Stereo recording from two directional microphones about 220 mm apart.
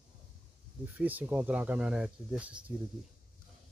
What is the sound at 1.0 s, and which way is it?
Speech, 5° right (ahead or behind).